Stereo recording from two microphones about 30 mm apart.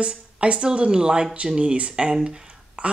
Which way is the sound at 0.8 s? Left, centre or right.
Right.